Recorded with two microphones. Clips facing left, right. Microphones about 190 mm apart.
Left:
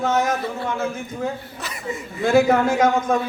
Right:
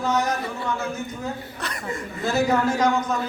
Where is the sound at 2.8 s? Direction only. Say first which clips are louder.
Left 4 dB; 50° left (ahead or behind).